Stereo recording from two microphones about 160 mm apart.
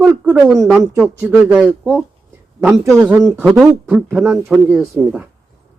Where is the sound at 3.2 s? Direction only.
Centre (ahead or behind).